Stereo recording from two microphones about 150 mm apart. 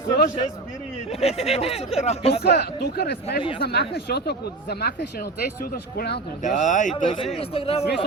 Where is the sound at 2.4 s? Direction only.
90° left.